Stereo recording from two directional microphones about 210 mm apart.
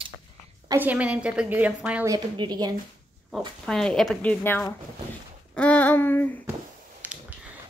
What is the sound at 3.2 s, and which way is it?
Speech, centre (ahead or behind).